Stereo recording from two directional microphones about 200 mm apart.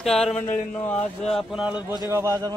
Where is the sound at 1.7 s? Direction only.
20° left (ahead or behind).